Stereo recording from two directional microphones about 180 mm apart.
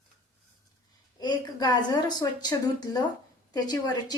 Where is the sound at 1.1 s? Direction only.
20° left (ahead or behind).